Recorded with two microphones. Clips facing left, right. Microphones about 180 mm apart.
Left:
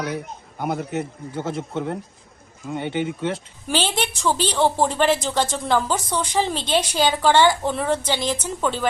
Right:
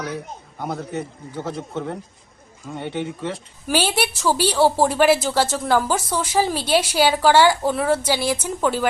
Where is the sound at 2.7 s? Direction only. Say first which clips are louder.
Left 2 dB; 20° left (ahead or behind).